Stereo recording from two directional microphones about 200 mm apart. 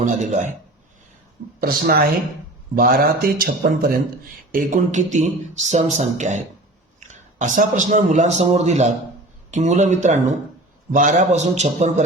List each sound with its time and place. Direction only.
0.0 s speech: 40° right (ahead or behind)
1.6 s speech: 50° right (ahead or behind)
4.5 s speech: 40° right (ahead or behind)